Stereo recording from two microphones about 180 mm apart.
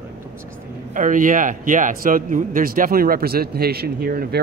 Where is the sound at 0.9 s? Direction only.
45° right (ahead or behind).